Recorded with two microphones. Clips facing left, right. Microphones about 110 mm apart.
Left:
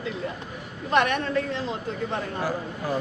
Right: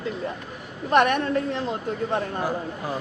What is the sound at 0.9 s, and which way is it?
Speech, 50° right (ahead or behind).